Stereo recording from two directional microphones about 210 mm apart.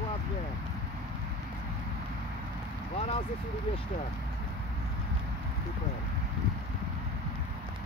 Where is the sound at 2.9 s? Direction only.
30° left (ahead or behind).